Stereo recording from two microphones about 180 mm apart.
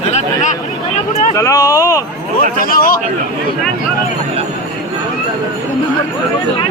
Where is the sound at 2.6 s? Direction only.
50° left (ahead or behind).